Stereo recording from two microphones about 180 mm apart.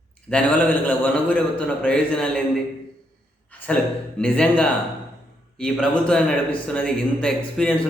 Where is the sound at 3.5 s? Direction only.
5° left (ahead or behind).